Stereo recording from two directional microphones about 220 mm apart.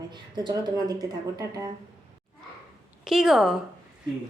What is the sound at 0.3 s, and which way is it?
Speech, 20° right (ahead or behind).